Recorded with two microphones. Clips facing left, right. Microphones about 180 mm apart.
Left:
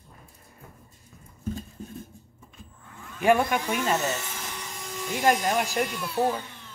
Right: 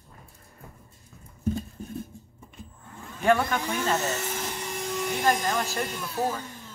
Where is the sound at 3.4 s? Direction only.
15° left (ahead or behind).